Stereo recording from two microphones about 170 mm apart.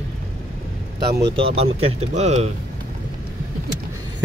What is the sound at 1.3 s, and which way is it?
Speech, 35° right (ahead or behind).